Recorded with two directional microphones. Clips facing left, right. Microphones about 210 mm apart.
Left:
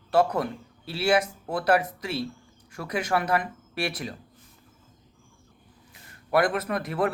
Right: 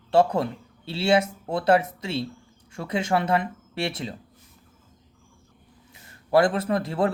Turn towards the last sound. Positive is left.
turn(degrees=-25)  # may be behind; listen again after turning